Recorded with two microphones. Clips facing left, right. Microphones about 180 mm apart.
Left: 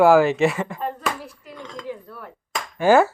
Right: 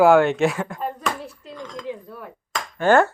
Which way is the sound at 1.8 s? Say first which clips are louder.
Even; 15° right (ahead or behind).